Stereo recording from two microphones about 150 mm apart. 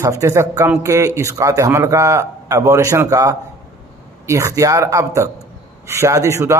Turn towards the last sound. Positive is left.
turn(degrees=-20)  # may be behind; listen again after turning